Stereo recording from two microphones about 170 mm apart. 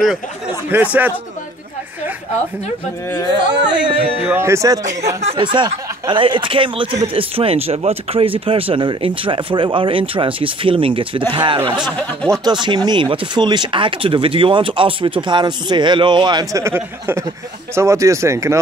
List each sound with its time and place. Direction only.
0.7 s speech: 10° right (ahead or behind)
3.6 s speech: 30° right (ahead or behind)
4.2 s speech: 15° right (ahead or behind)
5.2 s speech: 30° right (ahead or behind)
12.0 s speech: 5° left (ahead or behind)
12.4 s speech: 25° right (ahead or behind)